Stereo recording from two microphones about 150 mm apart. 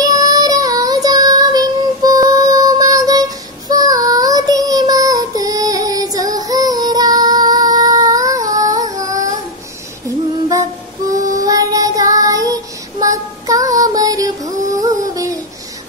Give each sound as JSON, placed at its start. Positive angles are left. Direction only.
{"t": 0.0, "sound": "child singing", "side_deg": -25}
{"t": 11.1, "sound": "music", "side_deg": -20}
{"t": 12.1, "sound": "child singing", "side_deg": -25}
{"t": 14.4, "sound": "music", "side_deg": -20}